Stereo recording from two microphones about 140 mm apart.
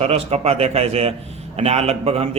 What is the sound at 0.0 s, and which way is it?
A man's voice, 45° right (ahead or behind).